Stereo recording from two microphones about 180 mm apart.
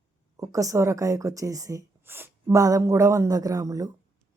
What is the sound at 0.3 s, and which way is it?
Speech, 20° right (ahead or behind).